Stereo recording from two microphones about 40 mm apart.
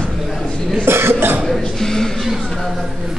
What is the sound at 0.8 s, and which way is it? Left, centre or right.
Cough, right.